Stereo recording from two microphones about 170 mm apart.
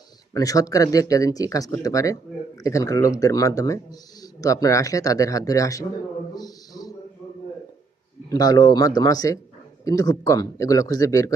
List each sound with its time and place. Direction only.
0.3 s speech: 20° left (ahead or behind)
6.3 s a sound: 20° left (ahead or behind)
8.3 s speech: 25° left (ahead or behind)